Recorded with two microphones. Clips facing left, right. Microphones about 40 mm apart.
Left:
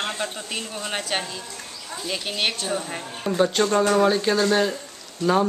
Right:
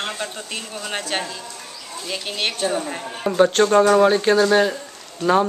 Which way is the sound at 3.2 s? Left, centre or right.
Centre.